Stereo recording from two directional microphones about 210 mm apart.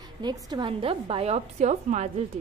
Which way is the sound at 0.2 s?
20° right (ahead or behind).